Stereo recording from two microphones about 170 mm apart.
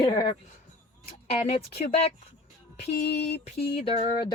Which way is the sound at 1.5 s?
35° left (ahead or behind).